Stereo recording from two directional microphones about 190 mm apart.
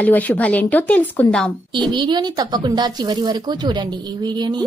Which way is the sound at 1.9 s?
25° right (ahead or behind).